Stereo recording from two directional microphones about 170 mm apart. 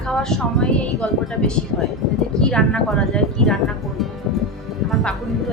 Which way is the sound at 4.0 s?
Centre (ahead or behind).